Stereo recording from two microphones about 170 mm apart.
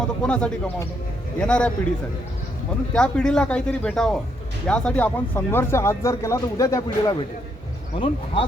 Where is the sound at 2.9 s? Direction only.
5° left (ahead or behind).